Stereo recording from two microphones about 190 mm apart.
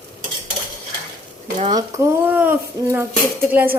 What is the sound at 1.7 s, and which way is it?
A woman's voice, 20° right (ahead or behind).